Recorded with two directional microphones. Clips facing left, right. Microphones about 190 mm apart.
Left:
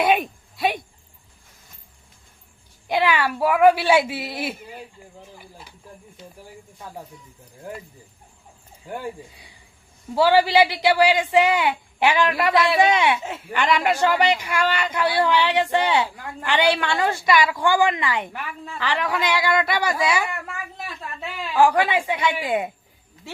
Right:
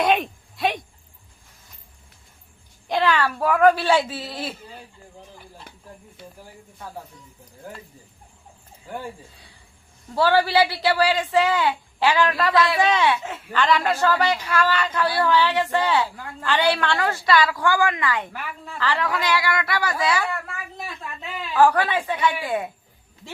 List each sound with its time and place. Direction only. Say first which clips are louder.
0.0 s a sound: left 1 dB; 5° left (ahead or behind)
2.9 s speech: even; 10° left (ahead or behind)
9.3 s speech: left 1 dB; 15° left (ahead or behind)
21.6 s speech: even; 15° left (ahead or behind)